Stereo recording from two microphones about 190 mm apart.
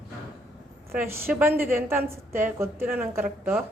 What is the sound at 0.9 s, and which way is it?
Speech, 10° right (ahead or behind).